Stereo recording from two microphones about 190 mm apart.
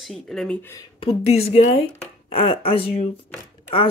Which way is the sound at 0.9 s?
30° left (ahead or behind).